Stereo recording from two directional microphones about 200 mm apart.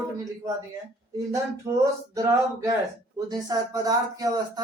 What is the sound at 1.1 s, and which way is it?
Speech, 15° right (ahead or behind).